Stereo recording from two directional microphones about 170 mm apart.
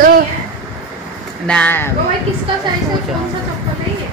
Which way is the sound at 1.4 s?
5° left (ahead or behind).